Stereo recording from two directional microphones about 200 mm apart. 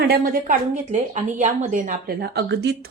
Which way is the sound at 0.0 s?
50° right (ahead or behind).